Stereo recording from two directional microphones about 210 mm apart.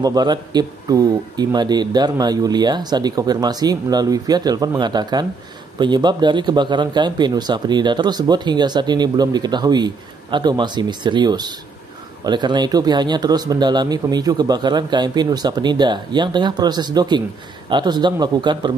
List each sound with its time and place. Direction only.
0.0 s a man's voice: 20° right (ahead or behind)